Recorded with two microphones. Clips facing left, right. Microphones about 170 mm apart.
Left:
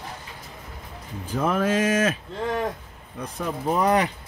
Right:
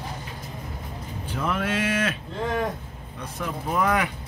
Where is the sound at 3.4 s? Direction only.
30° left (ahead or behind).